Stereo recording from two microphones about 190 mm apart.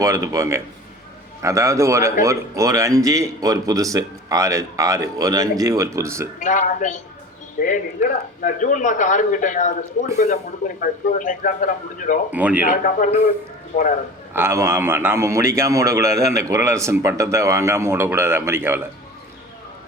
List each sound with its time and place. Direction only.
0.0 s a man's voice: 15° right (ahead or behind)
6.4 s a man's voice: 40° left (ahead or behind)
12.3 s a man's voice: 10° right (ahead or behind)
12.6 s speech: 45° left (ahead or behind)
14.3 s a man's voice: 15° right (ahead or behind)